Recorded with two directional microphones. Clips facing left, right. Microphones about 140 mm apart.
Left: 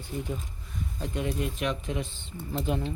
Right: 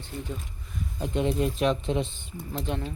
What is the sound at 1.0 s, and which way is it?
Speech, 25° right (ahead or behind).